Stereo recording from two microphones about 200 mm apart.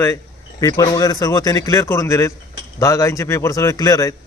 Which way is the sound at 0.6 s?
15° left (ahead or behind).